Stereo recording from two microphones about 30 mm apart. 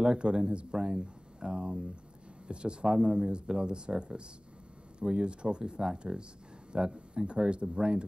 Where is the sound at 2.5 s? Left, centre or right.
Right.